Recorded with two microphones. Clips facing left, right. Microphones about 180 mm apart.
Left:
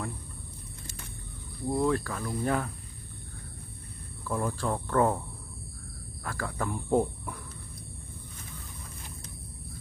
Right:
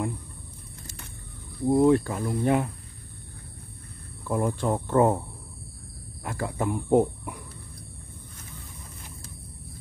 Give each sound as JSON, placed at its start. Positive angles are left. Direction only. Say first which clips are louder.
{"t": 1.7, "sound": "speech", "louder": "right 8 dB", "side_deg": -25}
{"t": 4.4, "sound": "speech", "louder": "right 5 dB", "side_deg": -20}
{"t": 6.2, "sound": "speech", "louder": "right 5 dB", "side_deg": -20}